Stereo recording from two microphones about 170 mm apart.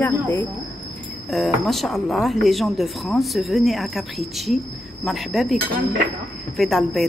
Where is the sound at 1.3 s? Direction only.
Centre (ahead or behind).